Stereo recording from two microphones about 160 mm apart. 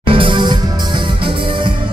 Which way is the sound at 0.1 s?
30° right (ahead or behind).